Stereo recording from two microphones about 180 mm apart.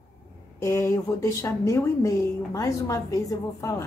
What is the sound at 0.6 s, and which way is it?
A woman's voice, 15° left (ahead or behind).